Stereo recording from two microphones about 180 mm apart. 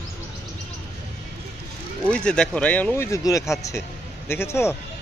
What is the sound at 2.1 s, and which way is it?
Speech, 5° left (ahead or behind).